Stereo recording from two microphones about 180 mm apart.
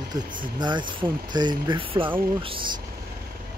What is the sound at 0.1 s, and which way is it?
Speech, 25° right (ahead or behind).